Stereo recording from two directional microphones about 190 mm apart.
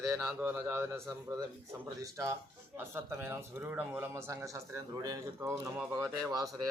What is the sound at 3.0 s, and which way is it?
Speech, 15° right (ahead or behind).